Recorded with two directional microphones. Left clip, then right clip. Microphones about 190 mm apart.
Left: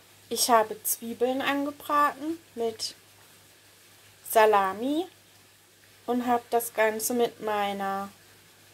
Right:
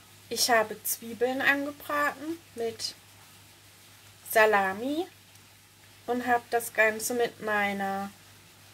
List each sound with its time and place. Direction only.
0.3 s speech: 15° left (ahead or behind)
4.3 s speech: 15° left (ahead or behind)
6.0 s speech: 15° left (ahead or behind)